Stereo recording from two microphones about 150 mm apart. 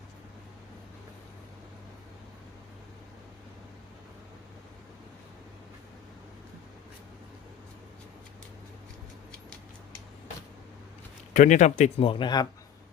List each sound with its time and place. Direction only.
11.3 s speech: 55° left (ahead or behind)
12.0 s speech: 30° left (ahead or behind)